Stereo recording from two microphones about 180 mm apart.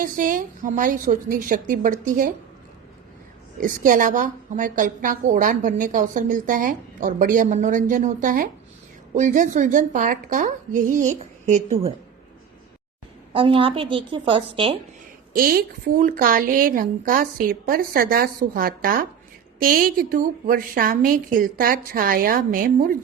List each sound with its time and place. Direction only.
0.0 s a woman's voice: 45° right (ahead or behind)
3.6 s a woman's voice: 45° right (ahead or behind)
13.3 s a woman's voice: 30° right (ahead or behind)
15.3 s a woman's voice: 55° right (ahead or behind)